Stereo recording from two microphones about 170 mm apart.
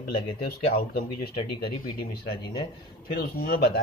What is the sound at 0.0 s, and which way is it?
Speech, 65° left (ahead or behind).